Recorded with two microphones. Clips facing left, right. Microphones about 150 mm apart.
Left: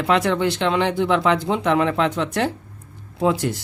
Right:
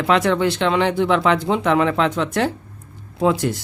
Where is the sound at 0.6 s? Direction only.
90° right.